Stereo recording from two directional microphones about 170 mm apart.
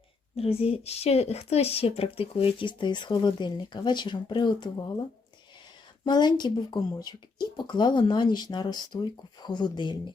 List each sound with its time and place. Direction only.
0.3 s a woman's voice: 35° left (ahead or behind)
6.1 s speech: 25° left (ahead or behind)